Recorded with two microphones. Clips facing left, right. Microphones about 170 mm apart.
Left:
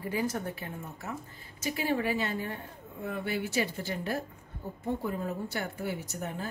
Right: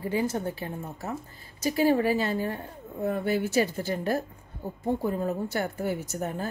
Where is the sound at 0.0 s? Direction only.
30° right (ahead or behind).